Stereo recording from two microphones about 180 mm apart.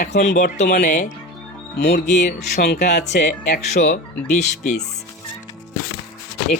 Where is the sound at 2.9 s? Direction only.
70° left (ahead or behind).